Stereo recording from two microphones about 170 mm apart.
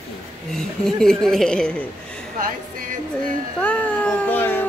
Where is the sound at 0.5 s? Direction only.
5° left (ahead or behind).